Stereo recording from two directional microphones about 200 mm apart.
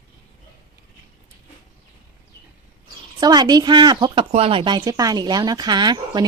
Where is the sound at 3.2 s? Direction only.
20° right (ahead or behind).